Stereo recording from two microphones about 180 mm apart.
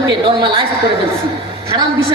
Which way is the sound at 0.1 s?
25° right (ahead or behind).